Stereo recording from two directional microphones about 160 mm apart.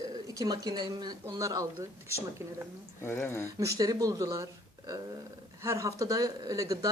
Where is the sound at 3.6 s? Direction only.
20° right (ahead or behind).